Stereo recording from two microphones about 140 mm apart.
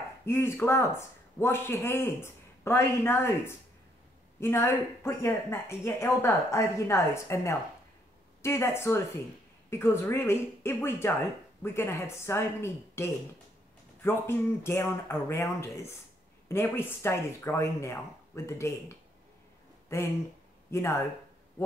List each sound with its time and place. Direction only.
0.2 s a man's voice: 15° left (ahead or behind)